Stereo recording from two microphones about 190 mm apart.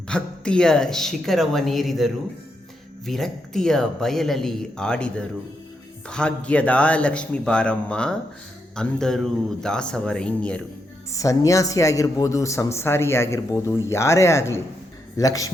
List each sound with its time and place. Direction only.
0.1 s speech: 5° left (ahead or behind)
11.1 s speech: 15° left (ahead or behind)